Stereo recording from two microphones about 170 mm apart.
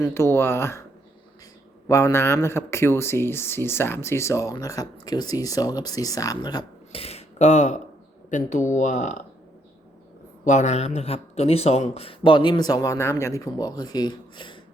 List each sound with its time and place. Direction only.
0.0 s speech: 15° left (ahead or behind)
1.9 s speech: 15° left (ahead or behind)
7.0 s speech: 35° left (ahead or behind)
10.4 s speech: 45° left (ahead or behind); by 14.6 s 30° left (ahead or behind)